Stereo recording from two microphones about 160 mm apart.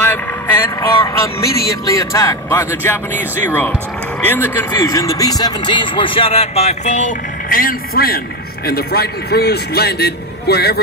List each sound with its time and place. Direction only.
0.0 s a sound: 10° left (ahead or behind)
1.0 s a man's voice: 20° left (ahead or behind); by 8.2 s 65° left (ahead or behind)
8.6 s a man's voice: 75° left (ahead or behind)